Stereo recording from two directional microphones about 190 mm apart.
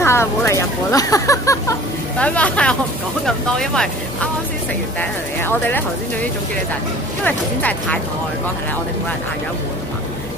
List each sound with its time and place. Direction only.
0.0 s speech: 15° left (ahead or behind)
2.1 s speech: 5° left (ahead or behind)
5.4 s speech: 10° left (ahead or behind)
7.2 s speech: 10° left (ahead or behind)